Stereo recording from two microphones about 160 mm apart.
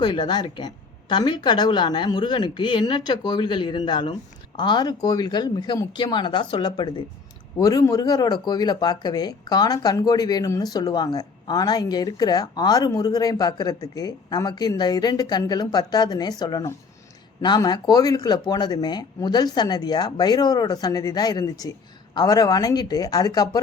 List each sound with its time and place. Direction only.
0.0 s speech: 30° left (ahead or behind)